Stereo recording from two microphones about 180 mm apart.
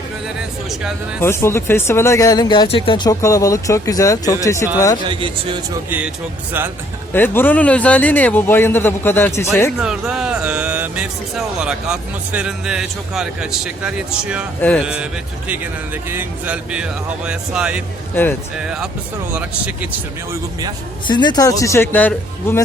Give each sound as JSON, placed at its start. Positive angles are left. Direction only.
{"t": 1.2, "sound": "speech", "side_deg": 15}
{"t": 5.0, "sound": "speech", "side_deg": -30}
{"t": 7.1, "sound": "speech", "side_deg": 10}
{"t": 9.8, "sound": "speech", "side_deg": -5}
{"t": 16.0, "sound": "speech", "side_deg": -10}
{"t": 18.1, "sound": "speech", "side_deg": 10}
{"t": 18.5, "sound": "speech", "side_deg": -5}
{"t": 20.3, "sound": "speech", "side_deg": -20}
{"t": 21.1, "sound": "speech", "side_deg": 25}